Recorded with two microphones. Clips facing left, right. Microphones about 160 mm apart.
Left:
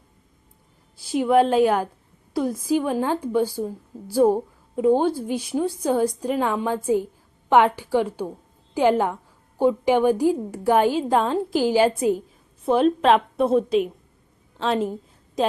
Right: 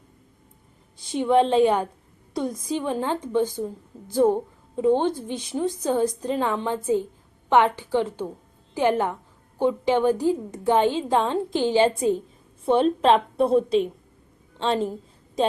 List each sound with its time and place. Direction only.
1.1 s a woman's voice: 5° left (ahead or behind)